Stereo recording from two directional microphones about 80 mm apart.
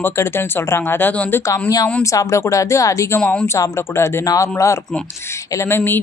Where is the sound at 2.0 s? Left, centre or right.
Left.